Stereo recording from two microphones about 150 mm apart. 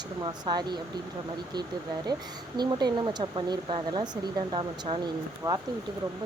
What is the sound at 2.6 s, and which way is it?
Speech, 30° right (ahead or behind).